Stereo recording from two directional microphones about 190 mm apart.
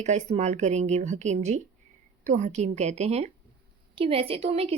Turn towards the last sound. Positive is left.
turn(degrees=-30)  # may be behind; listen again after turning